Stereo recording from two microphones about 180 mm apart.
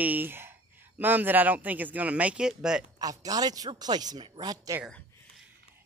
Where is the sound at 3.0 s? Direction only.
20° right (ahead or behind).